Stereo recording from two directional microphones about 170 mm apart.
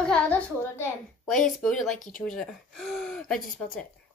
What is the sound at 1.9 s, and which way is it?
Speech, 50° left (ahead or behind).